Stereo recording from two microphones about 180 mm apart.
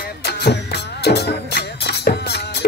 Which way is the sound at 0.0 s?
65° left (ahead or behind).